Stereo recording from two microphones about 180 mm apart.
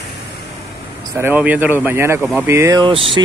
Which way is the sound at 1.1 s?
10° right (ahead or behind).